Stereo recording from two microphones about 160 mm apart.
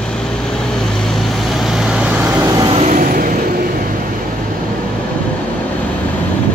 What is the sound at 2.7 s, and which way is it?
Vehicle, 40° right (ahead or behind).